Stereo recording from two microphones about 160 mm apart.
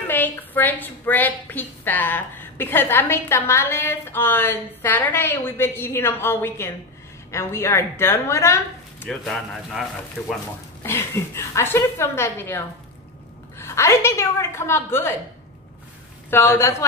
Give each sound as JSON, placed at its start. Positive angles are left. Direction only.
{"t": 0.1, "sound": "a woman's voice", "side_deg": 10}
{"t": 9.0, "sound": "speech", "side_deg": 5}
{"t": 10.8, "sound": "a woman's voice", "side_deg": 15}
{"t": 16.3, "sound": "a woman's voice", "side_deg": 15}